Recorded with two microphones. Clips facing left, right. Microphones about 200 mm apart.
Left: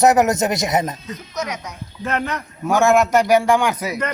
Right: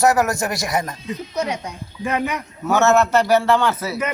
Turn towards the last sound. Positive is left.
turn(degrees=15)  # may be behind; listen again after turning